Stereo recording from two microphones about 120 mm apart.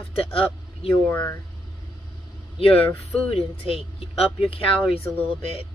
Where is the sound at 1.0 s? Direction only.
15° left (ahead or behind).